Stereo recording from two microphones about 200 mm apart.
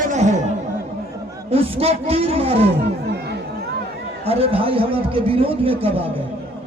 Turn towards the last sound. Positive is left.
turn(degrees=-30)  # may be behind; listen again after turning